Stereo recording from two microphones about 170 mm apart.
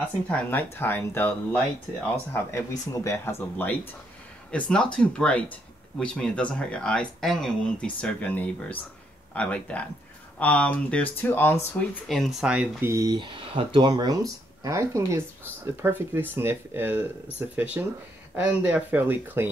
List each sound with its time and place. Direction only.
0.3 s speech: 10° left (ahead or behind)
12.1 s speech: centre (ahead or behind)
12.9 s speech: 25° right (ahead or behind)